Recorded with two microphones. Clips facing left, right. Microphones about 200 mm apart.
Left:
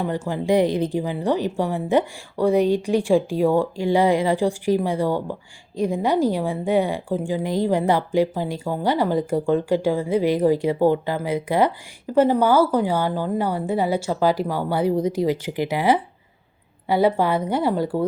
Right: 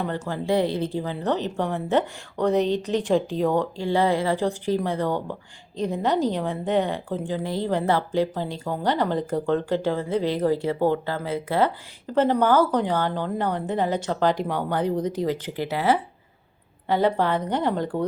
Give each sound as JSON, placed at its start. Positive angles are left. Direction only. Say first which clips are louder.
{"t": 0.0, "sound": "speech", "louder": "left 3 dB", "side_deg": 15}